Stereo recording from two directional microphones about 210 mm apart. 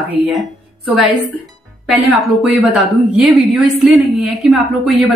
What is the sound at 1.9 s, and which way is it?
A woman's voice, centre (ahead or behind).